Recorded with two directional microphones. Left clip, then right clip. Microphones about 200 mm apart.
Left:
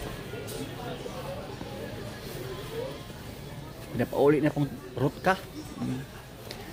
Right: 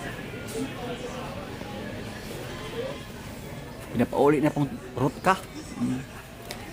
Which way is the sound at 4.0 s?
20° right (ahead or behind).